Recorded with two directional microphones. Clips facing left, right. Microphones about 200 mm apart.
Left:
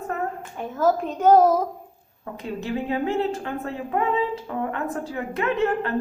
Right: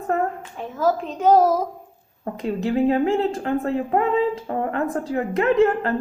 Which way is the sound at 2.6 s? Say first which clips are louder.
Right 7 dB; 40° right (ahead or behind).